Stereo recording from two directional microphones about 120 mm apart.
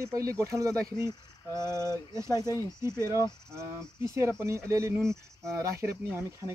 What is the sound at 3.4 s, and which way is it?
Speech, 25° right (ahead or behind).